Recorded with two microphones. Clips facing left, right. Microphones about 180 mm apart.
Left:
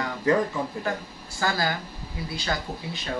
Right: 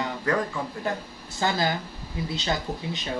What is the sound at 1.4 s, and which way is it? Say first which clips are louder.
Speech: right 1 dB; 20° right (ahead or behind).